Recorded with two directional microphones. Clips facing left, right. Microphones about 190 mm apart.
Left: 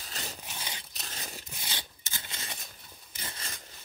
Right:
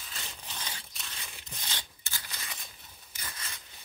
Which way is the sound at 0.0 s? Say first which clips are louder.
Left 4 dB; 40° left (ahead or behind).